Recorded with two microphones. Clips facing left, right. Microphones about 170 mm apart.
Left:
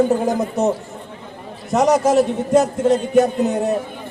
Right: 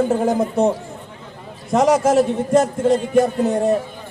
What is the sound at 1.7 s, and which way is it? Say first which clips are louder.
A man's voice: even; centre (ahead or behind).